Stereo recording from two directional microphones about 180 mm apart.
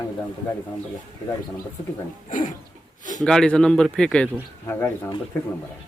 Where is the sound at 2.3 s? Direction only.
45° left (ahead or behind).